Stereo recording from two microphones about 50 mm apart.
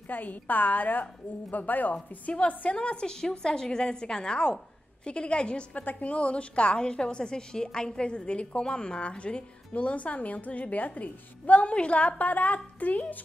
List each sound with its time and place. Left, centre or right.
0.1 s a woman's voice: left